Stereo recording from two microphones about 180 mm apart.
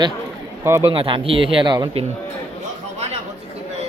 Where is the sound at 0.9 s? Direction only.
30° right (ahead or behind).